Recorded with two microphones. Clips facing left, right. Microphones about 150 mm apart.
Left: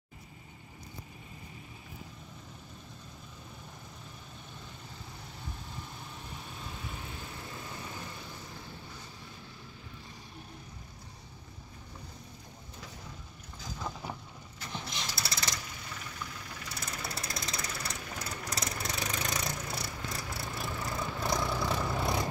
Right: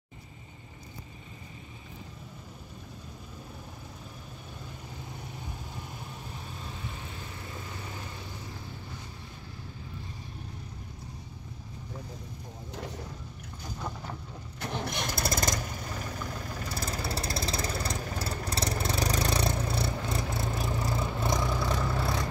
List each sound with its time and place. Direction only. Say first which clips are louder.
14.6 s engine starting: right 7 dB; 60° right (ahead or behind); by 17.7 s 30° right (ahead or behind)
17.8 s vehicle: right 6 dB; 35° right (ahead or behind)
21.4 s vehicle: right 2 dB; 10° right (ahead or behind)
21.6 s vehicle: right 1 dB; 10° left (ahead or behind)